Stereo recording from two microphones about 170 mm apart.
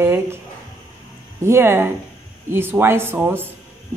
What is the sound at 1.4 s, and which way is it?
Speech, 15° right (ahead or behind).